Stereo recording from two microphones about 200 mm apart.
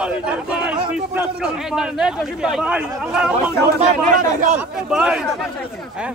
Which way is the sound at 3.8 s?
40° right (ahead or behind).